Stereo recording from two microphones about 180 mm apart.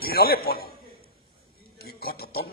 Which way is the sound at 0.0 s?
55° left (ahead or behind).